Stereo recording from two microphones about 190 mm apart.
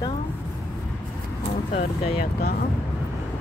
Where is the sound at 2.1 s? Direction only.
55° left (ahead or behind).